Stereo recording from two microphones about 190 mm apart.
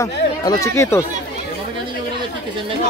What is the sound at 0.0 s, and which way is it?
Speech, 15° left (ahead or behind).